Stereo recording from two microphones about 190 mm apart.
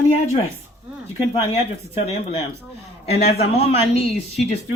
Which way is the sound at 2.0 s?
35° left (ahead or behind).